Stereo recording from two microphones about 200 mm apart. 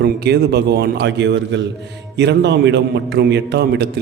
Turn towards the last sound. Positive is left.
turn(degrees=-55)  # may be behind; listen again after turning